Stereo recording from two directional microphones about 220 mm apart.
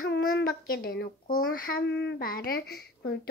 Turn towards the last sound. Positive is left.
turn(degrees=45)  # may be behind; listen again after turning